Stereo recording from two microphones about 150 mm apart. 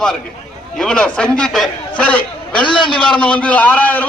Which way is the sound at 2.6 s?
35° left (ahead or behind).